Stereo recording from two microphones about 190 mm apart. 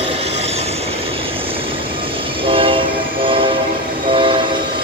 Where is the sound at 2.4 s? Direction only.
30° right (ahead or behind).